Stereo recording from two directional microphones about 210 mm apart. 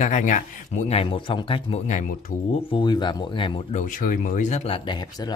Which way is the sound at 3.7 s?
40° left (ahead or behind).